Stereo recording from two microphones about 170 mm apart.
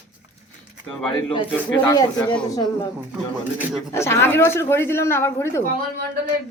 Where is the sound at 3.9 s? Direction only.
15° left (ahead or behind).